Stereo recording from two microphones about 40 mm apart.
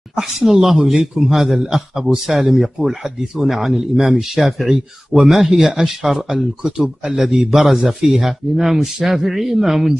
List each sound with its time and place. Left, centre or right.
0.2 s a man's voice: centre
6.2 s a man's voice: centre